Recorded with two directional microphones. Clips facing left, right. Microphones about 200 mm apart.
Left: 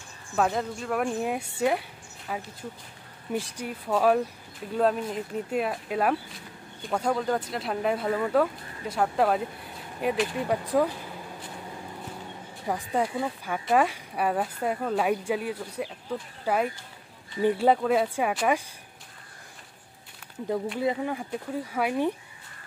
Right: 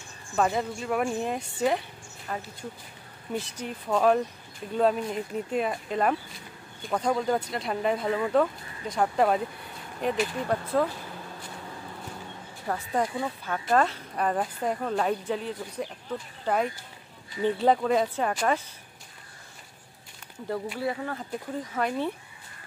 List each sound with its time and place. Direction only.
0.4 s speech: centre (ahead or behind)
12.6 s speech: 10° left (ahead or behind)
20.8 s speech: 20° left (ahead or behind)